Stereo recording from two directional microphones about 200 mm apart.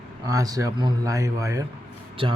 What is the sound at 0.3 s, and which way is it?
Speech, 15° right (ahead or behind).